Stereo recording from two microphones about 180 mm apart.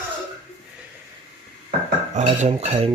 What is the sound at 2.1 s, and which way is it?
Cutlery, 40° right (ahead or behind).